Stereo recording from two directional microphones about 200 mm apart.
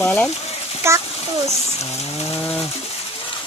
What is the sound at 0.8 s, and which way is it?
Speech, 15° right (ahead or behind).